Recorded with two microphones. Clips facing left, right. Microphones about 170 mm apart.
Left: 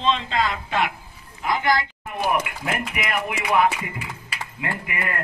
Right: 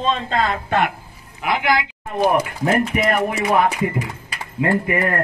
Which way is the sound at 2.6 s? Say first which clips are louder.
Right 9 dB; 40° right (ahead or behind).